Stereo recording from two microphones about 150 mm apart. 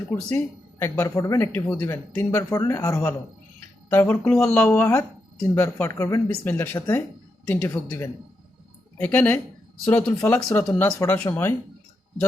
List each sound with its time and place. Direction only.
0.1 s speech: 15° left (ahead or behind)
4.2 s speech: centre (ahead or behind)